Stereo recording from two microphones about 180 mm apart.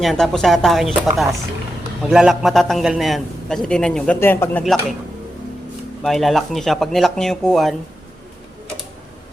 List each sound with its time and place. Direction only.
0.0 s a man's voice: centre (ahead or behind)
4.6 s a man's voice: centre (ahead or behind)
6.0 s a man's voice: centre (ahead or behind)